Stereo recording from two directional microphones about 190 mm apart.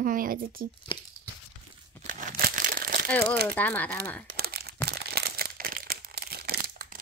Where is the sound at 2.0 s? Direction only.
50° right (ahead or behind).